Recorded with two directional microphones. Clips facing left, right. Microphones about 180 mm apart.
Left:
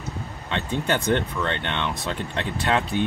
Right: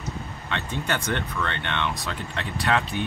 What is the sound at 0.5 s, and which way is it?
Speech, 20° left (ahead or behind).